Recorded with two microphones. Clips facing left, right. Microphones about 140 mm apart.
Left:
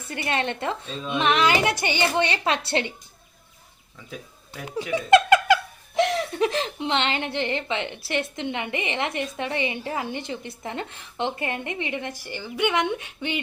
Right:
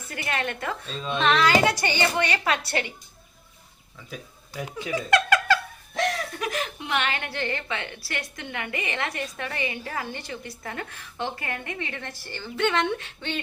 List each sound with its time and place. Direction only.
0.1 s a woman's voice: 25° left (ahead or behind)
0.9 s a woman's voice: 10° left (ahead or behind)
4.9 s a sound: 25° left (ahead or behind)
6.0 s a woman's voice: 25° left (ahead or behind)